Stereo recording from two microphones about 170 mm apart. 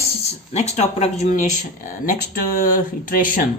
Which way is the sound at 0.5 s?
40° left (ahead or behind).